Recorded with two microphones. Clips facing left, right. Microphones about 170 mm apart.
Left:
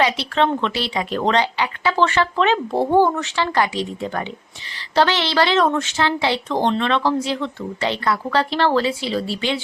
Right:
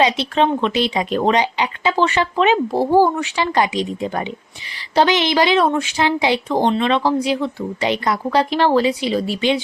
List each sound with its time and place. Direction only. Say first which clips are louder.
0.0 s speech: right 2 dB; 20° right (ahead or behind)
2.7 s speech: even; 5° right (ahead or behind)